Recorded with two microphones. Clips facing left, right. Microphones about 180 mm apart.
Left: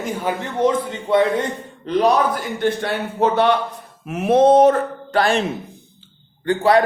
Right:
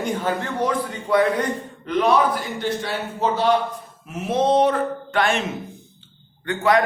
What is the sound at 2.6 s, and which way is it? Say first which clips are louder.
A man's voice: left 8 dB; 60° left (ahead or behind).